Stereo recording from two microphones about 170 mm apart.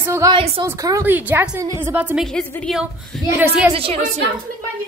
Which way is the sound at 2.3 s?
5° left (ahead or behind).